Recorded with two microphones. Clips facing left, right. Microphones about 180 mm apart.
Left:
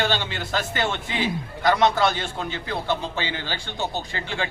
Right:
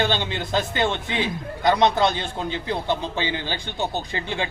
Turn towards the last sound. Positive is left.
turn(degrees=-20)  # may be behind; listen again after turning